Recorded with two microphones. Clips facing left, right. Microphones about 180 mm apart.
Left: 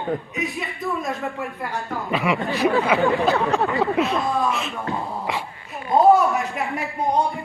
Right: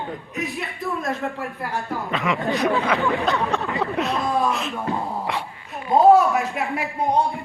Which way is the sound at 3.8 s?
Centre (ahead or behind).